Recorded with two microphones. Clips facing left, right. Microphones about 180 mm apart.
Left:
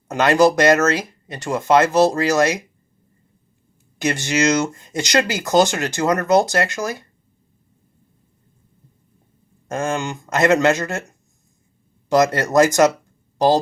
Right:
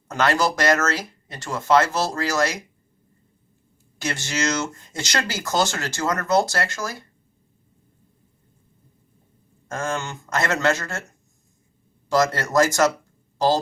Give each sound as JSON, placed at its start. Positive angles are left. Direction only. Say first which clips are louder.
{"t": 0.1, "sound": "speech", "louder": "left 7 dB", "side_deg": 15}
{"t": 3.9, "sound": "speech", "louder": "left 7 dB", "side_deg": 15}
{"t": 9.6, "sound": "speech", "louder": "left 5 dB", "side_deg": 20}
{"t": 12.0, "sound": "speech", "louder": "left 4 dB", "side_deg": 20}